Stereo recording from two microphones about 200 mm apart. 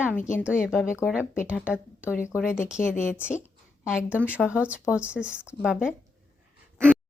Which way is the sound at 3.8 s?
5° right (ahead or behind).